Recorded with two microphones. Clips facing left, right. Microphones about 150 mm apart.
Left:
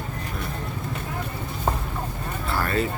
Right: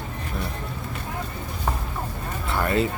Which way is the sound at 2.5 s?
20° right (ahead or behind).